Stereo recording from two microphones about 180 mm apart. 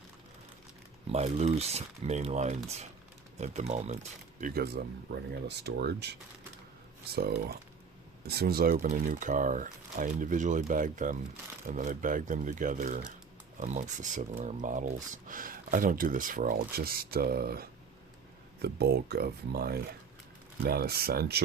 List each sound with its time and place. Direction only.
1.1 s speech: 35° right (ahead or behind)
4.4 s speech: 50° right (ahead or behind)